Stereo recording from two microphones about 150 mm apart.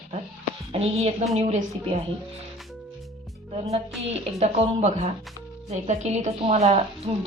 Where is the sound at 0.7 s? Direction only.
45° right (ahead or behind).